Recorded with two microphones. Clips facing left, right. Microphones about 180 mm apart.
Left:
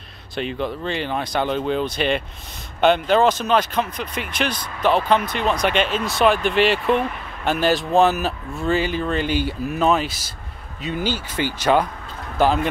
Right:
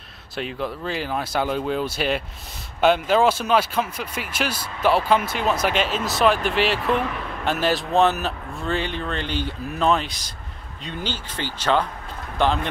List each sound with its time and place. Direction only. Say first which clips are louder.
0.4 s speech: left 3 dB; centre (ahead or behind)